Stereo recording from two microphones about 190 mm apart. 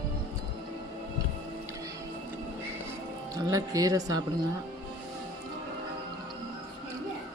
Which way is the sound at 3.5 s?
20° right (ahead or behind).